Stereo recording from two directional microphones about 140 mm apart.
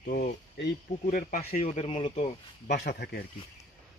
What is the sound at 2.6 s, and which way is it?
Speech, 80° left.